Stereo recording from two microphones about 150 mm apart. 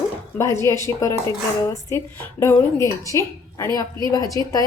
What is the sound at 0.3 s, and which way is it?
A woman's voice, 20° left (ahead or behind).